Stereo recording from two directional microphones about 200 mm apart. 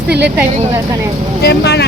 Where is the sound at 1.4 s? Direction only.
55° left (ahead or behind).